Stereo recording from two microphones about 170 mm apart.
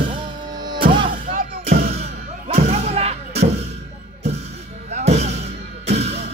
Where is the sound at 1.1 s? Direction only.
55° right (ahead or behind); by 3.2 s 40° right (ahead or behind).